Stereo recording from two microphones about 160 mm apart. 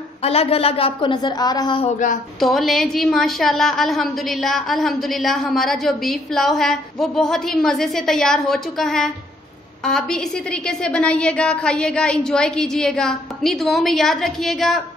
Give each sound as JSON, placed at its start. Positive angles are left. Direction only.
{"t": 0.2, "sound": "a woman's voice", "side_deg": 40}
{"t": 2.4, "sound": "a woman's voice", "side_deg": 0}